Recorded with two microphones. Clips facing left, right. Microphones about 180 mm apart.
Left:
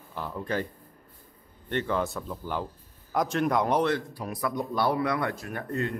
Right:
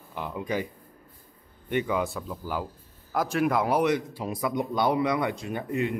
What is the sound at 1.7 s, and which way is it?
Speech, 10° right (ahead or behind).